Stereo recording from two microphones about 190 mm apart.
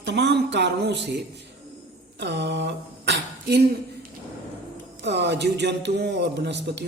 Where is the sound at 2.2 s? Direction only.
65° right (ahead or behind).